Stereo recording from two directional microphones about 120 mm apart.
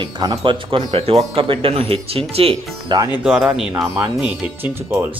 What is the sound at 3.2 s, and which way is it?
Speech, 10° right (ahead or behind).